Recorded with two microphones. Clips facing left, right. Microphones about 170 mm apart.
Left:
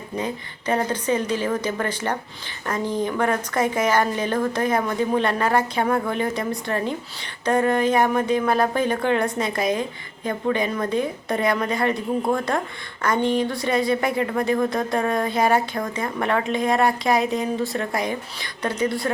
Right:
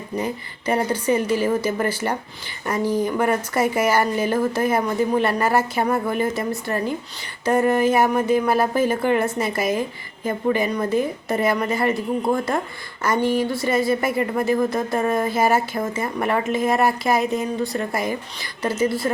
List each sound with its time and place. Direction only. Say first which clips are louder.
0.2 s a woman's voice: right 1 dB; 10° right (ahead or behind)